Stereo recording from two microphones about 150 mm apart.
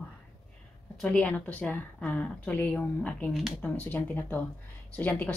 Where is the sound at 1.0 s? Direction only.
5° left (ahead or behind).